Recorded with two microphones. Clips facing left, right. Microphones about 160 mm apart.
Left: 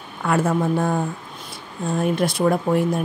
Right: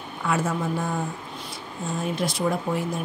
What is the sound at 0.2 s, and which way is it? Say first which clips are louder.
Speech: left 5 dB; 55° left (ahead or behind).